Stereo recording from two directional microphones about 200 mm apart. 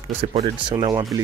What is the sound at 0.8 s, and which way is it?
Speech, 20° right (ahead or behind).